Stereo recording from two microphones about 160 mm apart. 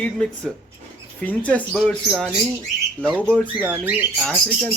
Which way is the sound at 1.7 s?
5° right (ahead or behind).